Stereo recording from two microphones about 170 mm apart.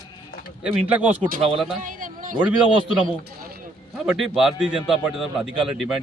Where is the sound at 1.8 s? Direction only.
55° right (ahead or behind).